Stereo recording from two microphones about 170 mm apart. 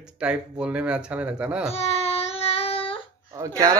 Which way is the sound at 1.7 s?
40° left (ahead or behind).